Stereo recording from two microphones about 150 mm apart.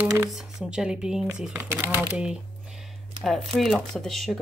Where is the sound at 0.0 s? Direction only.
15° right (ahead or behind).